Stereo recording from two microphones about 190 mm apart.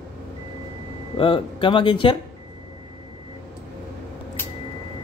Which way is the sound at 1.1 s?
25° left (ahead or behind).